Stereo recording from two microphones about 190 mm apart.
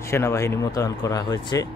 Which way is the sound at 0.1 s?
15° left (ahead or behind).